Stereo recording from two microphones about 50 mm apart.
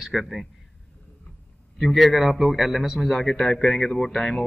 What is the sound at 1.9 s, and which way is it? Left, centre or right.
A man's voice, centre.